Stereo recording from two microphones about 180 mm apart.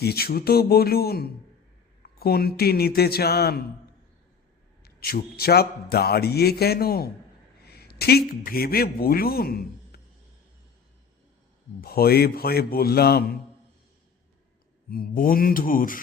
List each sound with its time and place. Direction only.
0.0 s a man's voice: 60° left (ahead or behind)
4.8 s a man's voice: 55° left (ahead or behind)
11.8 s a man's voice: 60° left (ahead or behind)
14.8 s mantra: 55° left (ahead or behind)